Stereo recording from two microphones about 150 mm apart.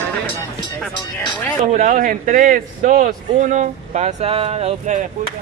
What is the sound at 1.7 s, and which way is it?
A man's voice, 60° right (ahead or behind).